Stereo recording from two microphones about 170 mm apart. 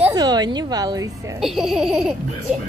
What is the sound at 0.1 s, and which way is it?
Speech, 25° right (ahead or behind).